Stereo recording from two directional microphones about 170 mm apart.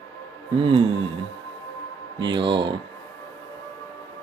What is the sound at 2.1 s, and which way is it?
Speech, 25° right (ahead or behind).